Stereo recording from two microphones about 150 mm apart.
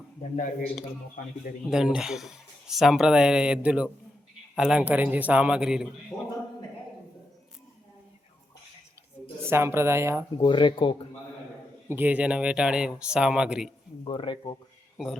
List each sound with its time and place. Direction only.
1.7 s speech: 5° right (ahead or behind)
9.4 s speech: 15° right (ahead or behind)
10.3 s speech: 30° left (ahead or behind)
11.9 s speech: 10° right (ahead or behind)
14.0 s speech: 30° left (ahead or behind)
14.9 s speech: centre (ahead or behind)